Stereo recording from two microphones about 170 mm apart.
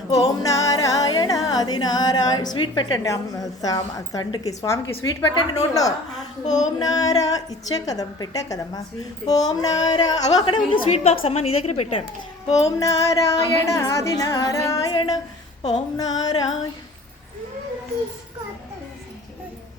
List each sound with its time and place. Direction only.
0.1 s music: 20° left (ahead or behind)
3.6 s a woman's voice: 20° left (ahead or behind)
6.4 s child singing: 45° left (ahead or behind)
6.7 s a woman's voice: 20° left (ahead or behind)
10.7 s a woman's voice: 35° left (ahead or behind)
12.6 s music: 20° left (ahead or behind)
13.7 s a woman's voice: 15° left (ahead or behind)